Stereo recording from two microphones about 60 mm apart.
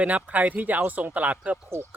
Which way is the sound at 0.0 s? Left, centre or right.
Right.